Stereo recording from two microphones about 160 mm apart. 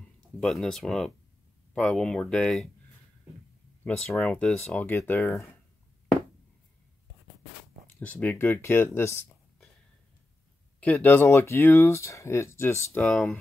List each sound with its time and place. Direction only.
0.2 s speech: 5° left (ahead or behind)
3.8 s speech: 5° left (ahead or behind)
7.8 s speech: 10° left (ahead or behind)
10.8 s speech: 10° left (ahead or behind)
13.0 s speech: 5° left (ahead or behind)